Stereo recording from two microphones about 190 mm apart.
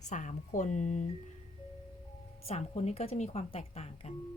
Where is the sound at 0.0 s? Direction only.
40° left (ahead or behind).